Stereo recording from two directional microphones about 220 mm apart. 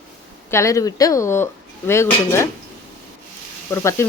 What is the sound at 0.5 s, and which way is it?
Speech, 15° left (ahead or behind).